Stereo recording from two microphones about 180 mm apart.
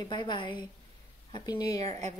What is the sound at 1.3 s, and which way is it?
Speech, 20° left (ahead or behind).